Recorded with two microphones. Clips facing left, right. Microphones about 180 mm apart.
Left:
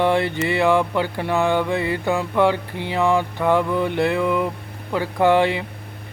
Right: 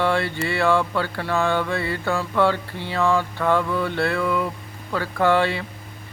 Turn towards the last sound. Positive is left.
turn(degrees=15)  # may be behind; listen again after turning